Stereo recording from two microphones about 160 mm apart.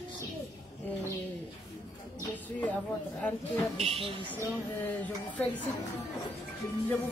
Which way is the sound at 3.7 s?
40° right (ahead or behind).